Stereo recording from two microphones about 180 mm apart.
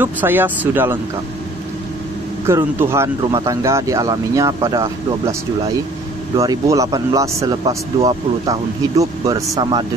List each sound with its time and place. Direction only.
0.0 s speech: 10° right (ahead or behind)
2.4 s speech: 15° right (ahead or behind)
6.3 s speech: 20° right (ahead or behind)